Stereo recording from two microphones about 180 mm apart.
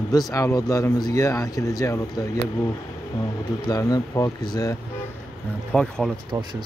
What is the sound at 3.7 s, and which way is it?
Speech, 20° left (ahead or behind).